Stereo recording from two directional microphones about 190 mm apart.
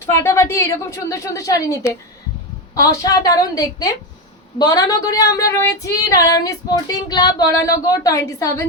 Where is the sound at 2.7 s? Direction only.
20° left (ahead or behind).